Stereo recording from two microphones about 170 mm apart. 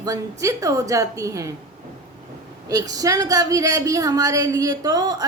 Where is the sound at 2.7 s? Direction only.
20° right (ahead or behind).